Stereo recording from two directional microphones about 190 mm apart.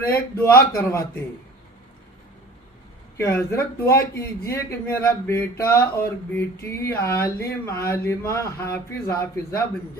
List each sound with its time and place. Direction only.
0.1 s speech: 15° left (ahead or behind)
3.2 s speech: 15° left (ahead or behind)